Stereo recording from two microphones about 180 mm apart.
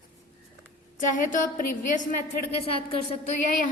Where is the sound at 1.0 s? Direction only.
45° left (ahead or behind).